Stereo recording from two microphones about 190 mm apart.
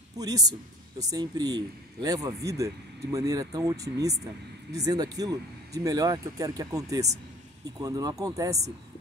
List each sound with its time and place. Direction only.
0.2 s a man's voice: 20° right (ahead or behind)